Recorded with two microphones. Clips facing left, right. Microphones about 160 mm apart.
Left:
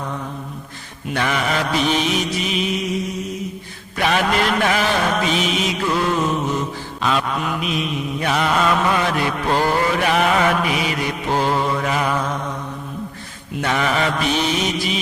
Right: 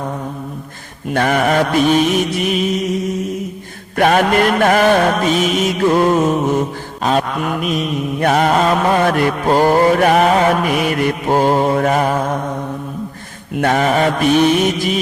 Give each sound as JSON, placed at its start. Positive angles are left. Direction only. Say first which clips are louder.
{"t": 1.1, "sound": "mantra", "louder": "right 7 dB", "side_deg": -50}
{"t": 3.9, "sound": "mantra", "louder": "right 6 dB", "side_deg": -50}
{"t": 13.6, "sound": "mantra", "louder": "right 6 dB", "side_deg": -45}